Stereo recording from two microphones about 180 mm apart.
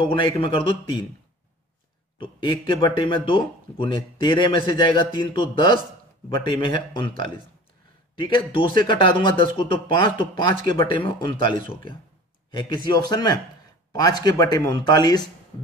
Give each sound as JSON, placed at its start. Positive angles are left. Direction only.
{"t": 0.0, "sound": "speech", "side_deg": 30}
{"t": 2.1, "sound": "speech", "side_deg": 30}
{"t": 12.4, "sound": "speech", "side_deg": 25}